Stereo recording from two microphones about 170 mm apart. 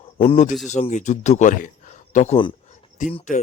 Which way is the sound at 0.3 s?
40° left (ahead or behind).